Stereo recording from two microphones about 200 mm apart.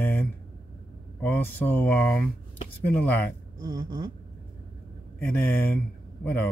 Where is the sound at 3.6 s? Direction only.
15° right (ahead or behind).